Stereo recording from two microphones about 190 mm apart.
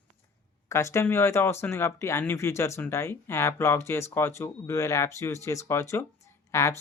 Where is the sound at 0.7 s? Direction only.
15° left (ahead or behind).